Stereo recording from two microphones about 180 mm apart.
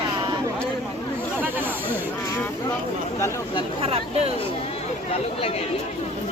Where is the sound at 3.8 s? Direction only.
35° right (ahead or behind).